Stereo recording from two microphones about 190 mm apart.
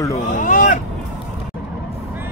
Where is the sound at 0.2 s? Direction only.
40° left (ahead or behind).